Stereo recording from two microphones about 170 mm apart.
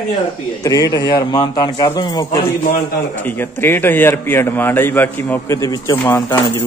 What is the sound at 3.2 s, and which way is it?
A man's voice, 10° left (ahead or behind).